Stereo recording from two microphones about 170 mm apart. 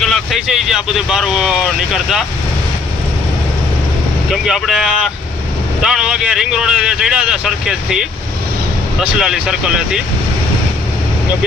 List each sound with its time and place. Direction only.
0.0 s speech: centre (ahead or behind)
4.4 s speech: centre (ahead or behind)
9.1 s speech: 5° right (ahead or behind)